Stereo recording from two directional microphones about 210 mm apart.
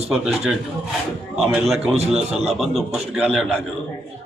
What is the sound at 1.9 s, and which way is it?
Speech, 30° right (ahead or behind).